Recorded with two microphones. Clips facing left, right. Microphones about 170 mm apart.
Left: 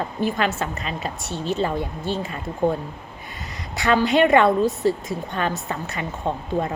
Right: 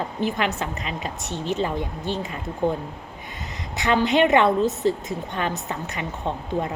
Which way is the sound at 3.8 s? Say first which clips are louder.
Left 1 dB; 20° right (ahead or behind).